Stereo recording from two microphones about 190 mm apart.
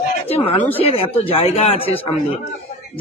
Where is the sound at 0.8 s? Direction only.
30° left (ahead or behind).